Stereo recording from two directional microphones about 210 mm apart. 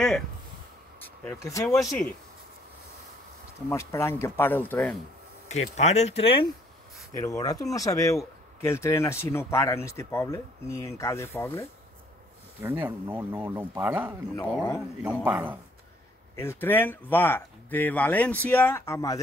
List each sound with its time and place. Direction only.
0.9 s speech: 10° left (ahead or behind)
3.6 s speech: 10° left (ahead or behind)
5.5 s speech: 30° left (ahead or behind)
7.2 s speech: 15° left (ahead or behind)
12.6 s speech: 10° right (ahead or behind)
16.3 s speech: 10° left (ahead or behind)